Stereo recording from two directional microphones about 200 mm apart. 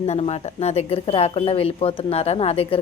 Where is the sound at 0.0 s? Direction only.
30° left (ahead or behind).